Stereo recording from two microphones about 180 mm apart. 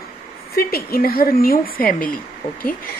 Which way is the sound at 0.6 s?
55° left (ahead or behind).